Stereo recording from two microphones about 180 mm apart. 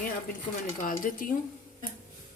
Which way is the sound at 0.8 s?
50° left (ahead or behind).